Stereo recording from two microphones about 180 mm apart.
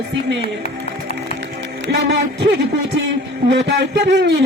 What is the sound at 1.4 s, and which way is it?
Music, 85° right.